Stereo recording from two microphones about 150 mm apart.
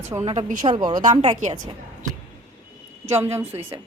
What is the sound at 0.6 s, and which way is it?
Speech, 30° right (ahead or behind).